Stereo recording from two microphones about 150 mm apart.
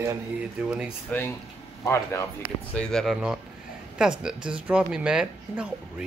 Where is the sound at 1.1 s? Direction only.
10° left (ahead or behind).